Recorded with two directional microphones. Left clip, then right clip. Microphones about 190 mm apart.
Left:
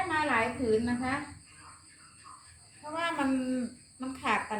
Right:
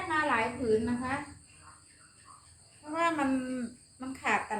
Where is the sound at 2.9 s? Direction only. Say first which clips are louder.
Right 2 dB; 20° right (ahead or behind).